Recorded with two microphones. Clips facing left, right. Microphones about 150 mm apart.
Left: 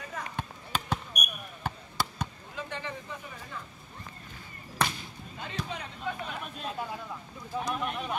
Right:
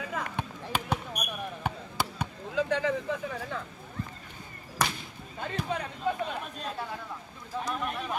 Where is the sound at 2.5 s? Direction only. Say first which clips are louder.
Right 11 dB; 90° right.